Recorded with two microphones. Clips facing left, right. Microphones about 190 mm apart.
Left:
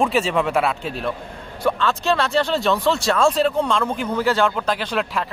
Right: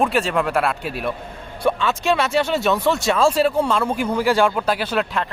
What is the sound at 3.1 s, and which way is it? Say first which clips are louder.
Speech: right 1 dB; 5° right (ahead or behind).